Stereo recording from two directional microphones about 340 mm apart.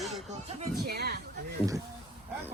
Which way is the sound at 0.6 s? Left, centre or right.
Right.